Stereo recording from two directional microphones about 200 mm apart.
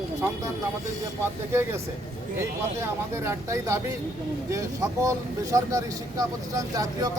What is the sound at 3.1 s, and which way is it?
Speech, 15° right (ahead or behind).